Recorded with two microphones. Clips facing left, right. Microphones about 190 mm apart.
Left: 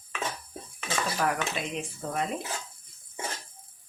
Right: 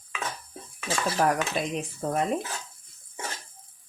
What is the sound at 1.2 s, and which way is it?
Speech, 40° right (ahead or behind).